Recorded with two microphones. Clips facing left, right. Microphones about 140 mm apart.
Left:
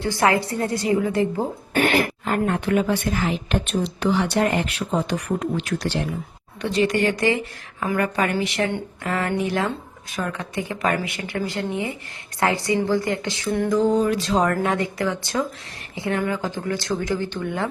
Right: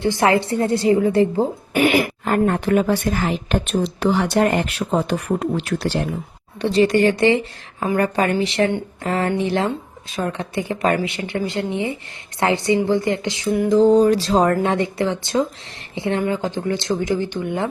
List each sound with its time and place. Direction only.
0.0 s a woman's voice: 20° right (ahead or behind)
1.7 s speech: 10° right (ahead or behind)
2.2 s speech: 45° right (ahead or behind)
6.6 s a woman's voice: 35° right (ahead or behind); by 13.7 s 15° right (ahead or behind)
13.7 s a woman's voice: 30° right (ahead or behind)